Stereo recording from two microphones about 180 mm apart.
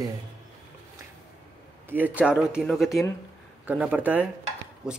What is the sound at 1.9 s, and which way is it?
Speech, 10° right (ahead or behind).